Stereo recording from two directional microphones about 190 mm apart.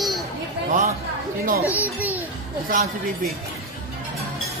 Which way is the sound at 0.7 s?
40° right (ahead or behind).